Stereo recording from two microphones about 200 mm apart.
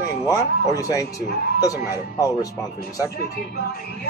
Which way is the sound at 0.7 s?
15° left (ahead or behind).